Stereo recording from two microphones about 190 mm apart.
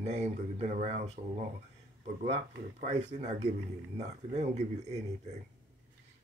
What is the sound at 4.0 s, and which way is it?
Speech, 35° right (ahead or behind).